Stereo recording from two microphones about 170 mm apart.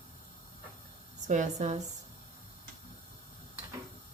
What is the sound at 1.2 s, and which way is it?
Speech, 45° right (ahead or behind).